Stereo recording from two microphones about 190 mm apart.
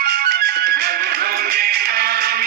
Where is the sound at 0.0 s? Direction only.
55° right (ahead or behind).